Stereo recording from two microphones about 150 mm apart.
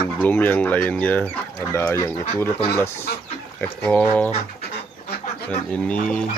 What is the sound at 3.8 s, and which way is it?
Speech, 10° left (ahead or behind).